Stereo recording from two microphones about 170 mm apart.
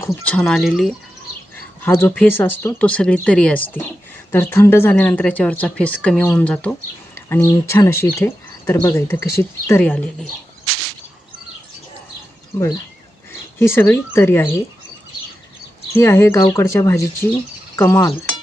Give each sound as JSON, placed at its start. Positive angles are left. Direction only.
{"t": 0.0, "sound": "speech", "side_deg": 5}
{"t": 1.8, "sound": "speech", "side_deg": 10}
{"t": 12.5, "sound": "speech", "side_deg": 20}
{"t": 15.9, "sound": "speech", "side_deg": 15}